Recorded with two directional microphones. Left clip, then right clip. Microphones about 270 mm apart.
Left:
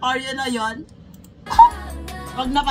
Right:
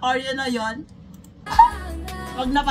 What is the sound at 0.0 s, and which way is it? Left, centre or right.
Speech, centre.